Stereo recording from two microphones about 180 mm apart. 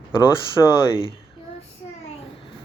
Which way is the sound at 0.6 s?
15° left (ahead or behind).